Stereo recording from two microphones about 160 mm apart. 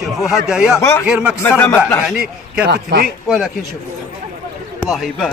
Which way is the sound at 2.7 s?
90° right.